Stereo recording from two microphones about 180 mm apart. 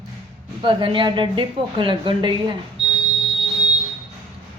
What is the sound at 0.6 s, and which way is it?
A woman's voice, 30° right (ahead or behind).